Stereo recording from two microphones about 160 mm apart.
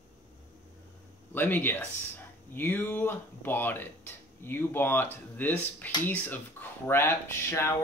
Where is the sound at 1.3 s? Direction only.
10° left (ahead or behind).